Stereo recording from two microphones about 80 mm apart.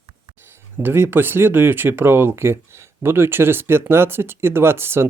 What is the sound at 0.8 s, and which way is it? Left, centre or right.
Speech, right.